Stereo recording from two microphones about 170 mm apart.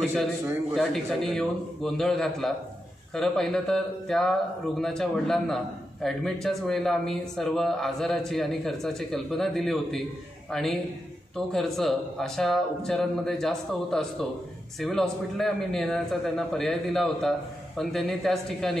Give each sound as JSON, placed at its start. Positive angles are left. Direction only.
{"t": 0.7, "sound": "a man's voice", "side_deg": 0}